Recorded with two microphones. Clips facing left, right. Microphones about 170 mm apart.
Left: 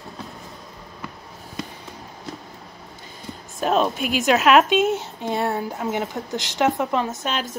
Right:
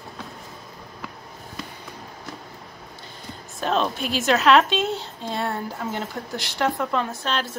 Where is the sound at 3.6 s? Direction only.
10° left (ahead or behind).